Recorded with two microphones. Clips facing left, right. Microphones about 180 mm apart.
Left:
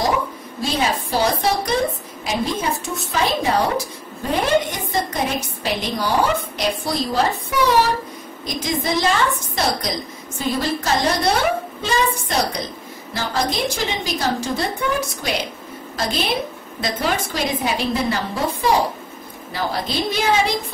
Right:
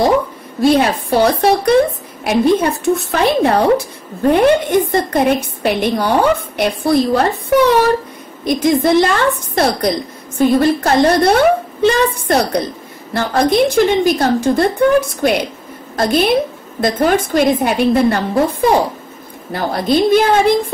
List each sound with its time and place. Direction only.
0.6 s a woman's voice: 60° right (ahead or behind)